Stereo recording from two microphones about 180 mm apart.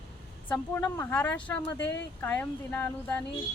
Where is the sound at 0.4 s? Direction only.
10° left (ahead or behind).